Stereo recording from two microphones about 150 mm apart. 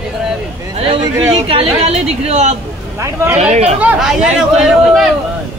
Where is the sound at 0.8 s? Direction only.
40° right (ahead or behind).